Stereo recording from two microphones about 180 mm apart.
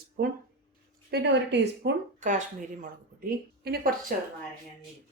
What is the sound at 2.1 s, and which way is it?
Speech, 45° right (ahead or behind).